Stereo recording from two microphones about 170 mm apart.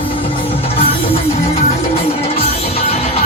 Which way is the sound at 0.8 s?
35° left (ahead or behind).